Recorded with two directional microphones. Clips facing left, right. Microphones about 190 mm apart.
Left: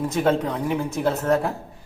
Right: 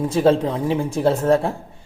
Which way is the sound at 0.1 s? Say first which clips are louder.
Right 6 dB; 30° right (ahead or behind).